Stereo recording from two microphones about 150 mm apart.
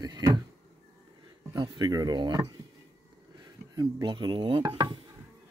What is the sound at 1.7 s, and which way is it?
Speech, 25° right (ahead or behind).